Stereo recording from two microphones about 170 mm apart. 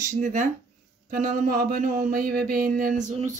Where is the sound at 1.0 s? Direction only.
55° right (ahead or behind).